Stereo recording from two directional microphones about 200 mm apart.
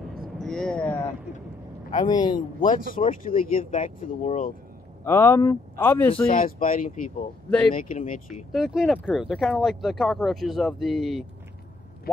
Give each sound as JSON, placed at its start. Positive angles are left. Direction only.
{"t": 0.4, "sound": "a sound", "side_deg": 0}
{"t": 2.0, "sound": "a man's voice", "side_deg": 20}
{"t": 2.6, "sound": "speech", "side_deg": 40}
{"t": 5.0, "sound": "speech", "side_deg": 10}
{"t": 6.3, "sound": "speech", "side_deg": 45}
{"t": 8.5, "sound": "speech", "side_deg": 0}